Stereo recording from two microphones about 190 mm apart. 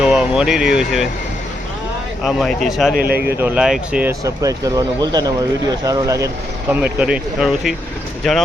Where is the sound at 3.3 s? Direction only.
10° right (ahead or behind).